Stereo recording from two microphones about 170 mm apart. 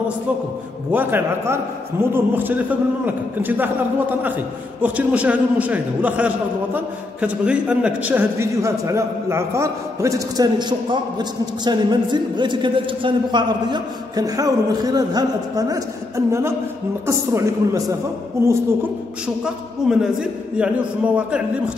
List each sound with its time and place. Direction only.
0.9 s a man's voice: 15° right (ahead or behind)
4.8 s a man's voice: 10° right (ahead or behind)
19.2 s a man's voice: 5° right (ahead or behind)